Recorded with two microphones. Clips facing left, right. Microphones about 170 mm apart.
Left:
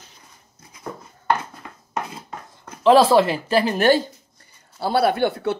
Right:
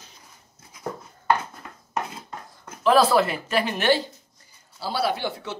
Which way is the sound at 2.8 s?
30° left (ahead or behind).